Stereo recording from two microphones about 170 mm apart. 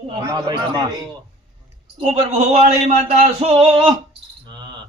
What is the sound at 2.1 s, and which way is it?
Speech, 35° right (ahead or behind).